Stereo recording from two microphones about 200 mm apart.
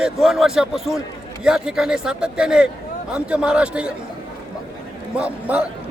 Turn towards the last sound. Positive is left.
turn(degrees=-5)  # may be behind; listen again after turning